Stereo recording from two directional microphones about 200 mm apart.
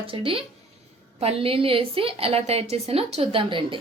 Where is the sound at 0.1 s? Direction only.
25° right (ahead or behind).